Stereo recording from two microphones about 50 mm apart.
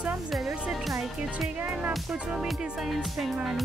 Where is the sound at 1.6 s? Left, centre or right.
Right.